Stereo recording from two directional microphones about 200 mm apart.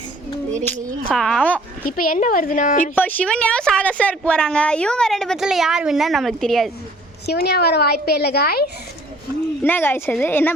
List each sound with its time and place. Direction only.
0.7 s speech: centre (ahead or behind)
1.9 s a woman's voice: 45° left (ahead or behind)
2.9 s a woman's voice: 10° left (ahead or behind)
7.3 s a woman's voice: 55° left (ahead or behind)
9.6 s a woman's voice: 10° left (ahead or behind)